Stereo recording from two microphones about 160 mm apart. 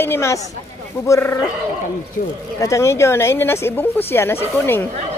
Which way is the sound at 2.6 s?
20° left (ahead or behind).